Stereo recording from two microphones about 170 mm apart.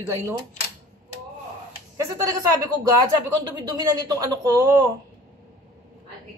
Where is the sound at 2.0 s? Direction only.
20° right (ahead or behind).